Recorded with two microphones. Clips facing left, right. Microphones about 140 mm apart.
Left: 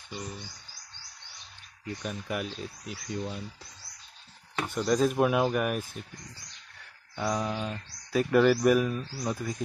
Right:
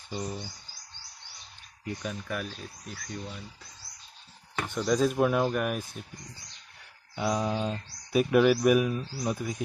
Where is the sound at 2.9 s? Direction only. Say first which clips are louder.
Left 5 dB; 30° left (ahead or behind).